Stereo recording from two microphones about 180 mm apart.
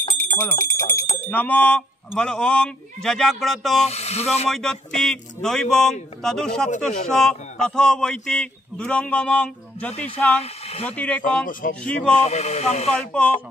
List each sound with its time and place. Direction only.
0.2 s speech: 15° left (ahead or behind)
3.8 s speech: 35° left (ahead or behind)
4.5 s speech: centre (ahead or behind)
10.4 s speech: 35° left (ahead or behind)
11.0 s speech: 10° left (ahead or behind)
12.2 s speech: 35° left (ahead or behind)
12.9 s speech: 5° left (ahead or behind)